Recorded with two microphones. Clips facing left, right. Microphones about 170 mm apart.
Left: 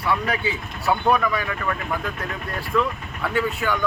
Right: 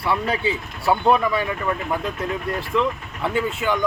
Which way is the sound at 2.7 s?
20° right (ahead or behind).